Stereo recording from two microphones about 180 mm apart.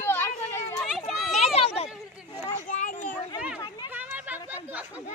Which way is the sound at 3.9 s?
10° right (ahead or behind).